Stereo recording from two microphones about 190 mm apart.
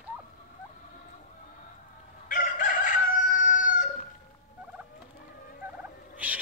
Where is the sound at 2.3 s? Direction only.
45° left (ahead or behind).